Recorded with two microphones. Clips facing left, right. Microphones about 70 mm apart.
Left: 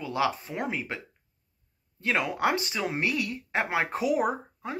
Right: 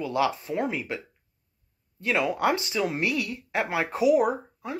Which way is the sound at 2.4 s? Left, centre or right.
Left.